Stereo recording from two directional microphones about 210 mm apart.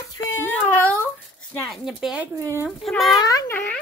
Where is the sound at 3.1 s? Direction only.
15° left (ahead or behind).